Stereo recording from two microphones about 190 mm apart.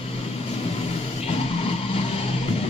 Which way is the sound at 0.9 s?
30° left (ahead or behind).